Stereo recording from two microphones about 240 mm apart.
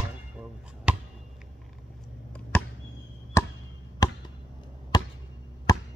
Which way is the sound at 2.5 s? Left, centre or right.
Centre.